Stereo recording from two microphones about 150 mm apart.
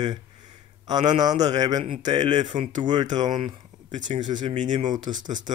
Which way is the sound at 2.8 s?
30° right (ahead or behind).